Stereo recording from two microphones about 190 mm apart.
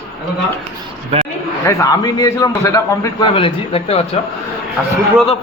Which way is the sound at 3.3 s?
30° left (ahead or behind).